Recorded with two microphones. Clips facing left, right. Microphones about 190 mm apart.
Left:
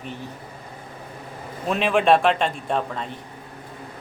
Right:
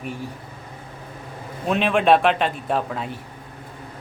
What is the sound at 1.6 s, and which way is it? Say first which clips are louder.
Speech: right 1 dB; centre (ahead or behind).